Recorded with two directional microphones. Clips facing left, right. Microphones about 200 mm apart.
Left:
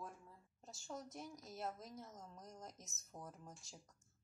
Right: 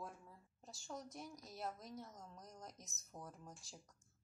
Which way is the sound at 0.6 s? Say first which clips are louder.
Even; centre (ahead or behind).